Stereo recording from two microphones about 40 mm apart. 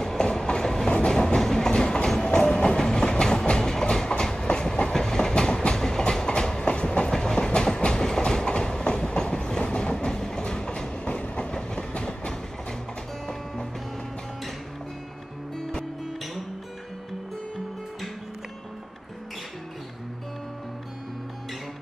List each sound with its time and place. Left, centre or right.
0.0 s train: centre